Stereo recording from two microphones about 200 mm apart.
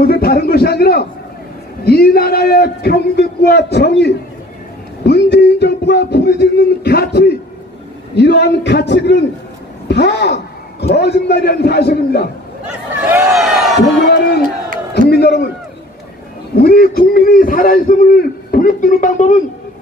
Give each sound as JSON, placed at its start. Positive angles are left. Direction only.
{"t": 0.0, "sound": "a man's voice", "side_deg": 50}
{"t": 13.0, "sound": "speech", "side_deg": -5}
{"t": 15.0, "sound": "a sound", "side_deg": 55}
{"t": 16.5, "sound": "a man's voice", "side_deg": 50}